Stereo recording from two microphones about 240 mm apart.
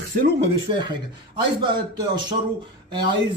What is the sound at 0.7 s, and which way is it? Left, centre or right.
A man's voice, centre.